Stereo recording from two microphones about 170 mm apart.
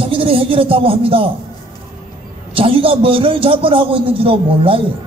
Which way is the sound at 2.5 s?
30° right (ahead or behind).